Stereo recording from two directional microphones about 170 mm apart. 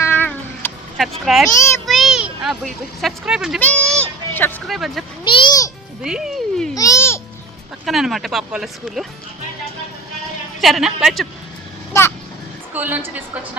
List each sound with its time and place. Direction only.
0.0 s cat: 15° left (ahead or behind)
0.6 s a sound: 10° left (ahead or behind)
1.2 s speech: centre (ahead or behind)
1.5 s a child's voice: 15° left (ahead or behind)
1.9 s speech: centre (ahead or behind)
3.6 s speech: 10° left (ahead or behind)
5.2 s a child's voice: 30° left (ahead or behind)
6.0 s speech: 5° right (ahead or behind)
6.7 s babbling: 20° left (ahead or behind)
7.9 s speech: centre (ahead or behind)
10.6 s speech: centre (ahead or behind)
11.9 s a sound: 20° left (ahead or behind)
12.7 s a woman's voice: 10° right (ahead or behind)